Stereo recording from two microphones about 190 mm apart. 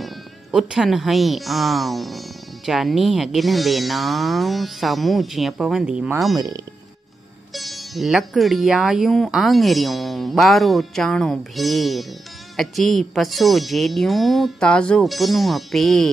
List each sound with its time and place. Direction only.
0.0 s speech: centre (ahead or behind)
6.3 s speech: 20° right (ahead or behind)
7.5 s speech: centre (ahead or behind)